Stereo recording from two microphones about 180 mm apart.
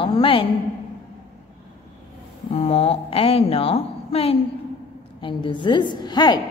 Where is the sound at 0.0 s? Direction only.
30° left (ahead or behind).